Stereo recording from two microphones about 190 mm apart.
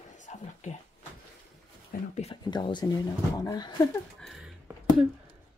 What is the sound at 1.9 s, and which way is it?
Speech, 40° left (ahead or behind).